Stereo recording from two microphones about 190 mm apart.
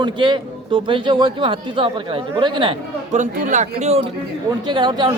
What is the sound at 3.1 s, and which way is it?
Speech, 40° right (ahead or behind).